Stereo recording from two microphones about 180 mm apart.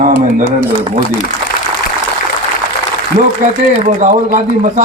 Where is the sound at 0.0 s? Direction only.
45° right (ahead or behind).